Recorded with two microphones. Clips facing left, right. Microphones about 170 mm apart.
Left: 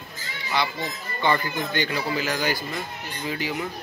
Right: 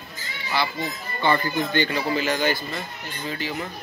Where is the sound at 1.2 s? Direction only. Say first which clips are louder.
Right 2 dB; 10° left (ahead or behind).